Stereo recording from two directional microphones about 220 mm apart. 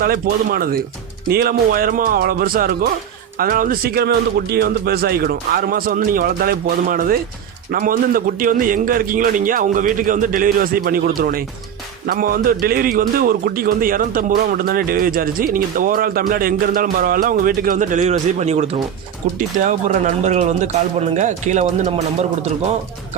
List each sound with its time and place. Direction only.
0.0 s a man's voice: 40° right (ahead or behind)
20.2 s a man's voice: 30° right (ahead or behind)